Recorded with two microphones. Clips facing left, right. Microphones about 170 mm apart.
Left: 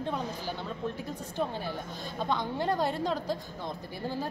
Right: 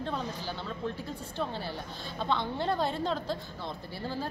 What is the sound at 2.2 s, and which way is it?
A woman's voice, 10° left (ahead or behind).